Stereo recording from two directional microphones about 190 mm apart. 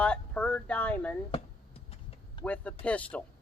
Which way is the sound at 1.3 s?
30° left (ahead or behind).